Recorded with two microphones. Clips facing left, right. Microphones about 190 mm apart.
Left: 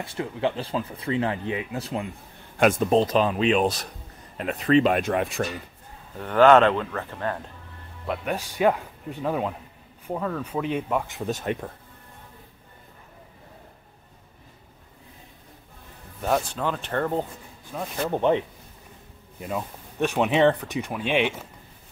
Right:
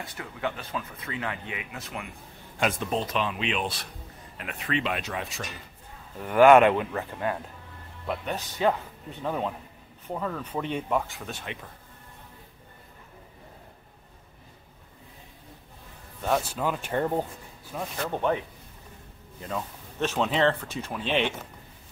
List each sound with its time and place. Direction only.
0.0 s speech: 25° left (ahead or behind)
2.6 s speech: 45° left (ahead or behind)
6.1 s speech: 10° right (ahead or behind)
8.1 s speech: 10° left (ahead or behind)
11.2 s speech: 45° left (ahead or behind)
16.4 s speech: 5° right (ahead or behind)
17.9 s speech: 15° left (ahead or behind)
19.4 s speech: 10° left (ahead or behind)